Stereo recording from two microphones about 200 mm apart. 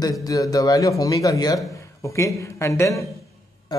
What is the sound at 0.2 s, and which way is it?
A man's voice, 20° left (ahead or behind).